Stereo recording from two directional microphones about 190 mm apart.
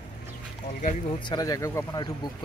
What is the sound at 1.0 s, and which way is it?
Speech, 20° left (ahead or behind).